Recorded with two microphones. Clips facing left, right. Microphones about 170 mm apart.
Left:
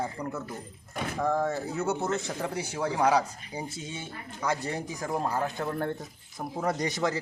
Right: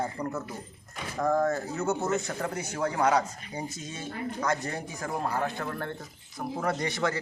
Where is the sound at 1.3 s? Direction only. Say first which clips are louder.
Right 2 dB; 10° left (ahead or behind).